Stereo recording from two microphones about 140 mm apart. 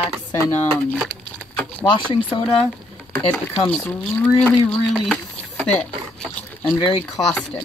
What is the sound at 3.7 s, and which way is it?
Speech, centre (ahead or behind).